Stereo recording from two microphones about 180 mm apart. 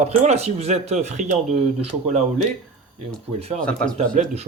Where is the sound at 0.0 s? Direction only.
35° right (ahead or behind).